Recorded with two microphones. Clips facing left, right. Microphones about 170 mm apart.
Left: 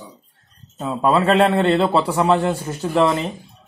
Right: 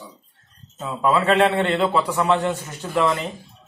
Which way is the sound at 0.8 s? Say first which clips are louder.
Left 3 dB; 30° left (ahead or behind).